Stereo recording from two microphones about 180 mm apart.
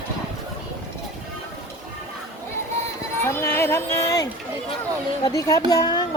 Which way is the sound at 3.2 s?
15° left (ahead or behind).